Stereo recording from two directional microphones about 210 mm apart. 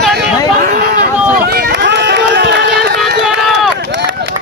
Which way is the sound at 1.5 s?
50° right (ahead or behind).